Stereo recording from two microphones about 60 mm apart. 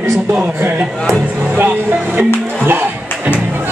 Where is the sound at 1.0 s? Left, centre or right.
Centre.